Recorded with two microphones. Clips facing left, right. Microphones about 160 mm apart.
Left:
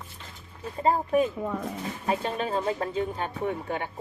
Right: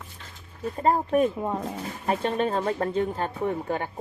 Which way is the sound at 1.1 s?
50° right (ahead or behind).